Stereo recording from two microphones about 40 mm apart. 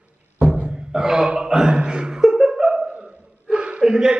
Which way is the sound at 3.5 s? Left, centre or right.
Right.